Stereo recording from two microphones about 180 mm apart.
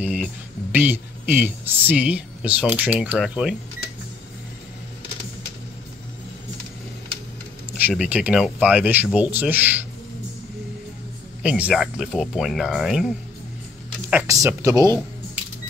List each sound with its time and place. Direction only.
0.0 s speech: 10° right (ahead or behind)
7.8 s speech: 5° right (ahead or behind)
11.4 s speech: 5° right (ahead or behind)
14.1 s speech: 15° right (ahead or behind)